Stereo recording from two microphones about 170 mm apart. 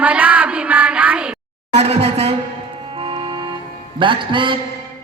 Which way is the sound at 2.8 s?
30° right (ahead or behind).